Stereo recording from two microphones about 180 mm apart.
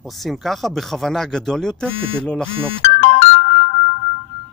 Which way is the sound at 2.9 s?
35° left (ahead or behind).